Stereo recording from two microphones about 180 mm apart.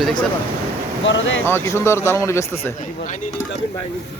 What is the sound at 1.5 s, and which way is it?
Speech, 15° left (ahead or behind).